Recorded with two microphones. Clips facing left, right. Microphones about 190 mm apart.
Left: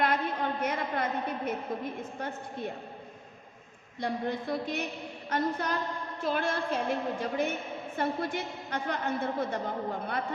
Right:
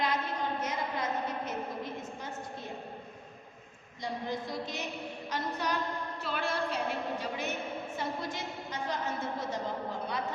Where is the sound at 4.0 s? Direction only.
60° left (ahead or behind).